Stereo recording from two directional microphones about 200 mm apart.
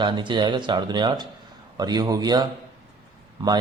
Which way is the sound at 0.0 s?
25° right (ahead or behind).